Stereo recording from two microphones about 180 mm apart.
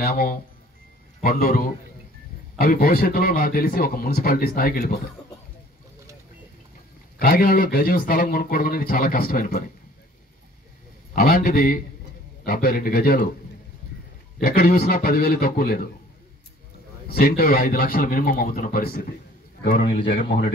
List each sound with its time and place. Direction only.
0.0 s a man's voice: 55° left (ahead or behind)
7.2 s speech: 55° left (ahead or behind)
11.1 s speech: 55° left (ahead or behind)
14.4 s a man's voice: 60° left (ahead or behind)
17.1 s speech: 55° left (ahead or behind)